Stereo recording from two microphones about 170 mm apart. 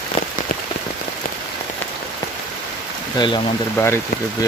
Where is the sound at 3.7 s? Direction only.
15° left (ahead or behind).